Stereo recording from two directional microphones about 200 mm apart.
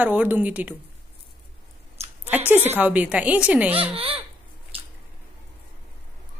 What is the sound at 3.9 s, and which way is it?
Speech, 30° right (ahead or behind).